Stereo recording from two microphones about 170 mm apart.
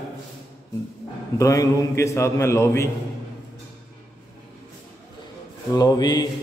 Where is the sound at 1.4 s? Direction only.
20° left (ahead or behind).